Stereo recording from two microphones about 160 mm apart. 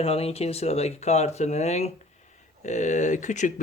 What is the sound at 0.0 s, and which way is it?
A man's voice, 40° left (ahead or behind).